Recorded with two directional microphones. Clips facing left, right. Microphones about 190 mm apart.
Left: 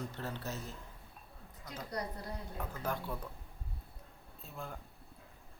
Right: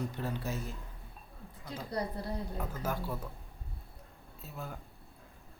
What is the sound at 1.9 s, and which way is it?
Speech, 30° right (ahead or behind).